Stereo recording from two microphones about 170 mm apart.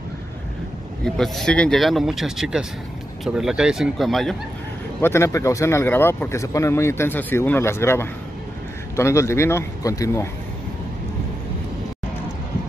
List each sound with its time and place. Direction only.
1.0 s speech: centre (ahead or behind)
5.0 s speech: 15° left (ahead or behind)